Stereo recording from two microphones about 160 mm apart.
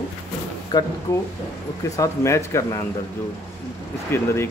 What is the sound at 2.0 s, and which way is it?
Speech, 20° left (ahead or behind).